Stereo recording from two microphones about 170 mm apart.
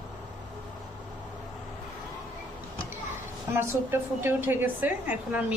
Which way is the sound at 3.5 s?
15° right (ahead or behind).